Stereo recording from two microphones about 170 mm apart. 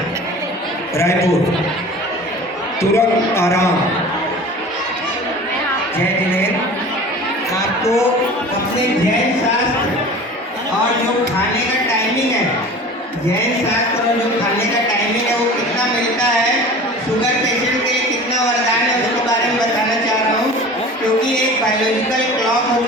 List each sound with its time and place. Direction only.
0.9 s a man's voice: 15° left (ahead or behind)
2.9 s a man's voice: 15° left (ahead or behind)